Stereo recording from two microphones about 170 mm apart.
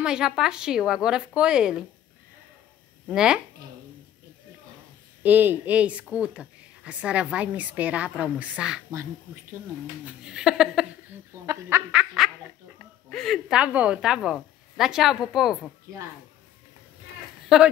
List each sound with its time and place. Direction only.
0.0 s a woman's voice: 5° right (ahead or behind)
3.1 s a woman's voice: 5° right (ahead or behind)
5.2 s speech: 10° right (ahead or behind)
10.0 s a woman's voice: 5° right (ahead or behind)
11.3 s a sound: 15° right (ahead or behind)
11.7 s speech: 15° right (ahead or behind)
12.2 s a woman's voice: centre (ahead or behind)
17.5 s a woman's voice: centre (ahead or behind)